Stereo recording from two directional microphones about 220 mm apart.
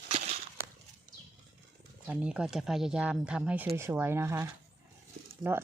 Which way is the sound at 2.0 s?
5° right (ahead or behind).